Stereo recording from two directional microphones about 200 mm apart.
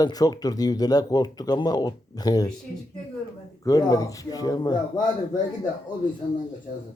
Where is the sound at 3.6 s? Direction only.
15° left (ahead or behind).